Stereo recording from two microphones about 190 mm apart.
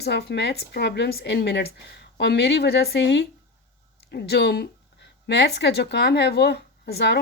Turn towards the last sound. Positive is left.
turn(degrees=60)  # may be behind; listen again after turning